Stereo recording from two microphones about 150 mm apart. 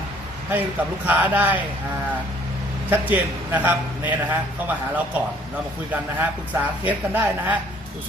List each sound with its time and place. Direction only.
1.0 s a man's voice: 10° right (ahead or behind)
2.9 s a man's voice: 10° right (ahead or behind)